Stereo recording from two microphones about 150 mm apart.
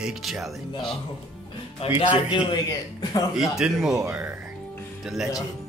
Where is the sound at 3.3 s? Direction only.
5° right (ahead or behind).